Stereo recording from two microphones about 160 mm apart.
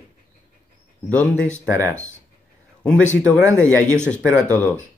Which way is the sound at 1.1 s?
5° left (ahead or behind).